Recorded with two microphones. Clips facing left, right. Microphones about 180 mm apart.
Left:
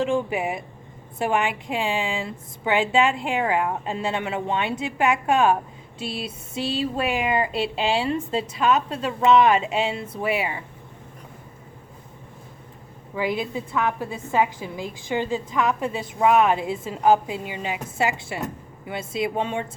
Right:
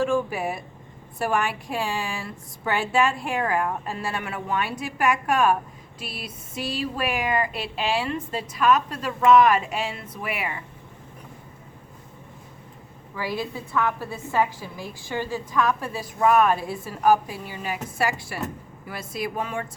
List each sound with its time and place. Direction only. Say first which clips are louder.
0.0 s a woman's voice: left 1 dB; 20° left (ahead or behind)
13.1 s a woman's voice: left 4 dB; 20° left (ahead or behind)